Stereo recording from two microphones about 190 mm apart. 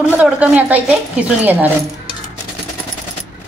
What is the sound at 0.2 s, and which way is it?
Speech, 10° right (ahead or behind).